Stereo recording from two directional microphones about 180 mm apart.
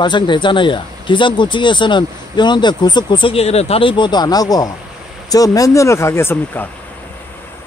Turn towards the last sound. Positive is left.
turn(degrees=10)  # may be behind; listen again after turning